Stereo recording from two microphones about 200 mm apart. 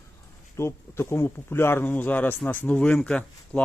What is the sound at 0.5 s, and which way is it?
Speech, 15° left (ahead or behind).